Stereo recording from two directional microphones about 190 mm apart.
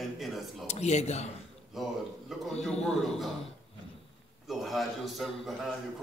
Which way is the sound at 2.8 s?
5° left (ahead or behind).